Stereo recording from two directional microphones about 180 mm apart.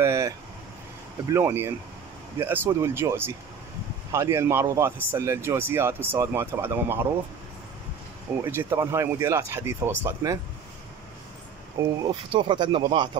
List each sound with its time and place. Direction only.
0.0 s air conditioning: 15° right (ahead or behind)
1.3 s speech: 10° right (ahead or behind)
8.5 s speech: 15° right (ahead or behind)
11.8 s speech: 20° right (ahead or behind)